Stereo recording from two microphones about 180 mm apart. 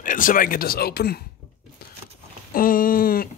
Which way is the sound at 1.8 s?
60° left (ahead or behind).